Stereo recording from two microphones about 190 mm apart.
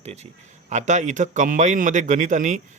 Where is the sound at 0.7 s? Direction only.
40° right (ahead or behind).